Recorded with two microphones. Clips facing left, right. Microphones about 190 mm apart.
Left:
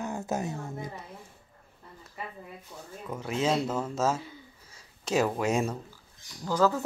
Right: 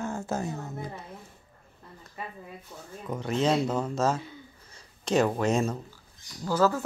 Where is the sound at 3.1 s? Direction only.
5° left (ahead or behind).